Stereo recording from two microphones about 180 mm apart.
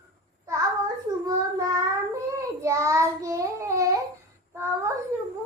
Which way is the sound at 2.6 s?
15° right (ahead or behind).